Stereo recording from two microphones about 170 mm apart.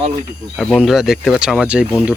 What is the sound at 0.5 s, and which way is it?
Speech, 5° left (ahead or behind).